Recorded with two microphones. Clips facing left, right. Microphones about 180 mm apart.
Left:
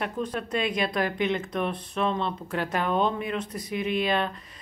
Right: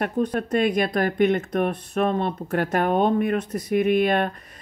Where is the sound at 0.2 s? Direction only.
50° right (ahead or behind).